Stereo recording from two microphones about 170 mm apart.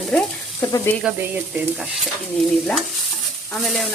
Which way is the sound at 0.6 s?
20° left (ahead or behind).